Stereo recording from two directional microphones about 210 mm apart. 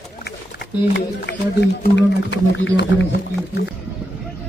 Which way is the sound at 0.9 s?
50° left (ahead or behind).